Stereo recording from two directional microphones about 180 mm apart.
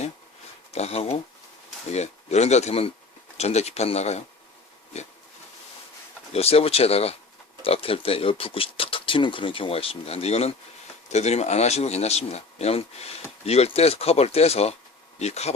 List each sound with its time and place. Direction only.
0.7 s speech: 35° left (ahead or behind)
6.3 s speech: 35° left (ahead or behind)